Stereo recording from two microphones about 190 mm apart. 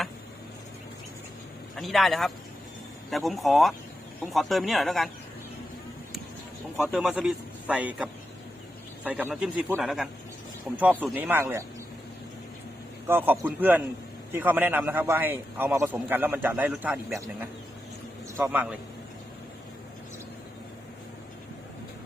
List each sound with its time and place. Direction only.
1.7 s a man's voice: centre (ahead or behind)
6.7 s a man's voice: 5° right (ahead or behind)
13.1 s a man's voice: 10° right (ahead or behind)